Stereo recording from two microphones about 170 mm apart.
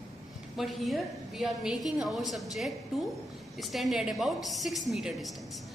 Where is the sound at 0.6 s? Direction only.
Centre (ahead or behind).